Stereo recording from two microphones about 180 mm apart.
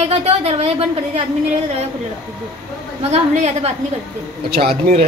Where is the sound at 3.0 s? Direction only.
35° right (ahead or behind).